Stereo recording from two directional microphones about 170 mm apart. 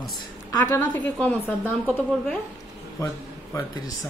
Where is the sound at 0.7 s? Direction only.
10° left (ahead or behind).